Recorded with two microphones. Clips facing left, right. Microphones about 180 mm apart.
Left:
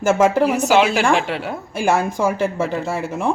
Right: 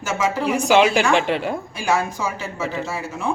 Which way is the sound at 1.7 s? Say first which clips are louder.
Left 6 dB; 50° left (ahead or behind).